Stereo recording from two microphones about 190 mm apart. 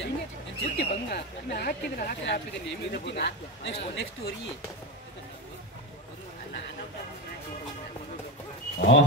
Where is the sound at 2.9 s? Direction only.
65° left (ahead or behind).